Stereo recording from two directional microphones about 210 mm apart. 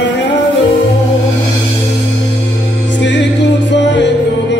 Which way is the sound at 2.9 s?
60° left (ahead or behind).